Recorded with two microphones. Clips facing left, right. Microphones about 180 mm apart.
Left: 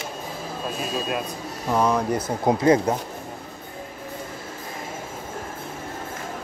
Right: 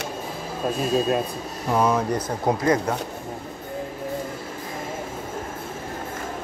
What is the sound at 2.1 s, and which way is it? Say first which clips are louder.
Speech: left 1 dB; 10° left (ahead or behind).